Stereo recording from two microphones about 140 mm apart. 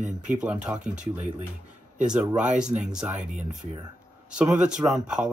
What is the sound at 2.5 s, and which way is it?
Speech, 5° right (ahead or behind).